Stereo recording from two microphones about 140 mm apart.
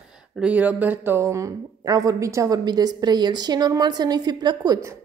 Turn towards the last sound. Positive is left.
turn(degrees=-30)  # may be behind; listen again after turning